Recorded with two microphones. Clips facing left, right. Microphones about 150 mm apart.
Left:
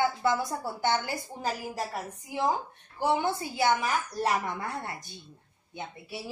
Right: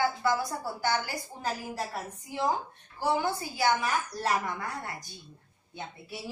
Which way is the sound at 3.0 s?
25° left (ahead or behind).